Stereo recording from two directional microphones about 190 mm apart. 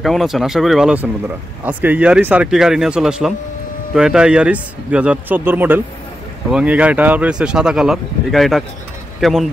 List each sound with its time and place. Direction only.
0.0 s speech: centre (ahead or behind)